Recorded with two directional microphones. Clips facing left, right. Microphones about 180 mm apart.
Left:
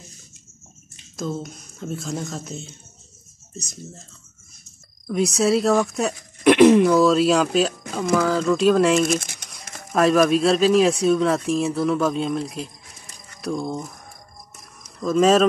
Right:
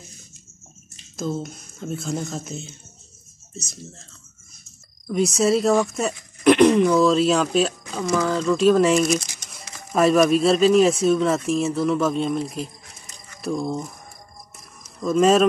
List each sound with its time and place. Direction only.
1.1 s speech: 5° right (ahead or behind)
5.0 s speech: centre (ahead or behind)
9.1 s crumpling: 55° left (ahead or behind)
9.9 s speech: centre (ahead or behind)
15.0 s speech: centre (ahead or behind)